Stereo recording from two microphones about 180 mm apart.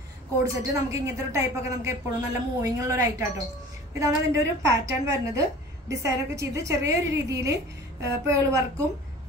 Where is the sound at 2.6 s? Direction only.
20° right (ahead or behind).